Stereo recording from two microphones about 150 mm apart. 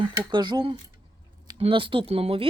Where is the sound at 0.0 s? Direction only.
30° right (ahead or behind).